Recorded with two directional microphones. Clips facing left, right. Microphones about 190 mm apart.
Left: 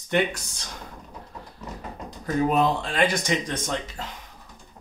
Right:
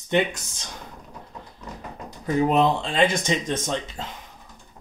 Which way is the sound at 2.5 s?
25° right (ahead or behind).